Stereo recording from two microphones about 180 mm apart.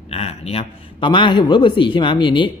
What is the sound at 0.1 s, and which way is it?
A man's voice, 35° left (ahead or behind).